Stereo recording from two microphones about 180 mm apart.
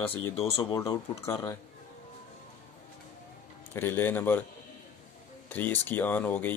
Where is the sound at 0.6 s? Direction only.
20° left (ahead or behind).